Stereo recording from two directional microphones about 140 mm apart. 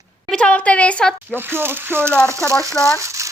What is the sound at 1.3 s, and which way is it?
Speech, 15° right (ahead or behind).